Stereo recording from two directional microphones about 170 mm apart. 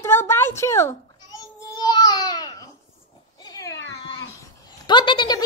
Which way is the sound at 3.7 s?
90° left.